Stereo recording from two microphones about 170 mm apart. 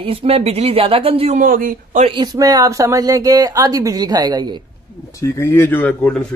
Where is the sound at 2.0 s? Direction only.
25° right (ahead or behind).